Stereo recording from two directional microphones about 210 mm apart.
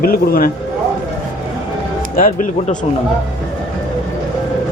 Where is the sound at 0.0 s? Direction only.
45° left (ahead or behind).